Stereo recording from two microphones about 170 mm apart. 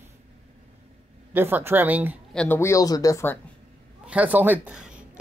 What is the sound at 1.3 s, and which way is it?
Speech, 15° right (ahead or behind).